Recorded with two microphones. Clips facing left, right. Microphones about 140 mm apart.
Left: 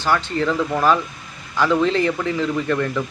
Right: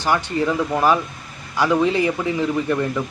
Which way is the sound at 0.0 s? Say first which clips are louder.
Even; 15° right (ahead or behind).